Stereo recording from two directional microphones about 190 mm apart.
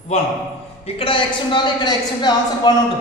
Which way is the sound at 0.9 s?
25° left (ahead or behind).